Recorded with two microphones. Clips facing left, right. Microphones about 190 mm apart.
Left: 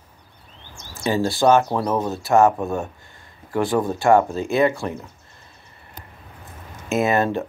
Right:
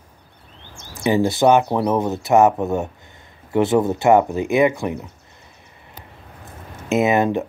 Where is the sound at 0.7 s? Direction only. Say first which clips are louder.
Right 4 dB; 20° right (ahead or behind).